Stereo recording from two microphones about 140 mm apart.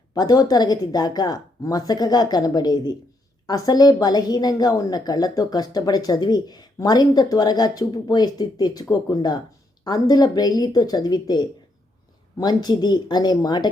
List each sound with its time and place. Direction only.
0.1 s a woman's voice: 25° left (ahead or behind)